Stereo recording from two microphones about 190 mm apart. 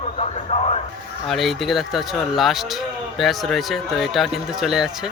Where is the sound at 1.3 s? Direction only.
Centre (ahead or behind).